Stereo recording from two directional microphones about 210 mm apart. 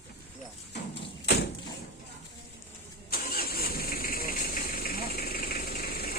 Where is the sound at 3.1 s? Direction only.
45° left (ahead or behind).